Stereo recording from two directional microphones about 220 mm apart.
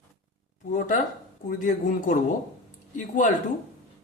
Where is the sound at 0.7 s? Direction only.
40° left (ahead or behind).